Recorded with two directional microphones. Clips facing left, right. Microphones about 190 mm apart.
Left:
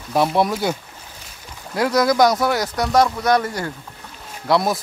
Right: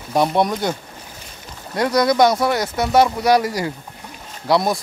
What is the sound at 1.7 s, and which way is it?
Speech, centre (ahead or behind).